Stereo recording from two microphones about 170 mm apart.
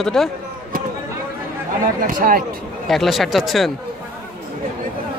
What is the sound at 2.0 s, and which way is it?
Speech, 55° right (ahead or behind).